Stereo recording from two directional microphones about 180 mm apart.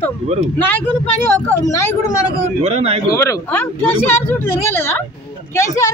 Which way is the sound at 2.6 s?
35° right (ahead or behind).